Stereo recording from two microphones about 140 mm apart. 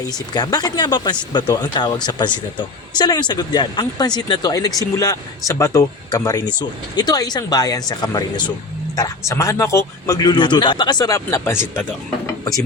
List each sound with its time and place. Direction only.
0.0 s a man's voice: 30° left (ahead or behind)
11.3 s speech: 15° left (ahead or behind)